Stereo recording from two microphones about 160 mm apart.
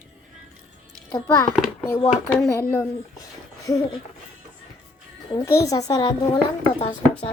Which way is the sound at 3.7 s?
20° left (ahead or behind).